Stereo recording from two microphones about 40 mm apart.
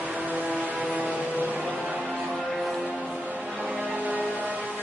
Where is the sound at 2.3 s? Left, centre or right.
Centre.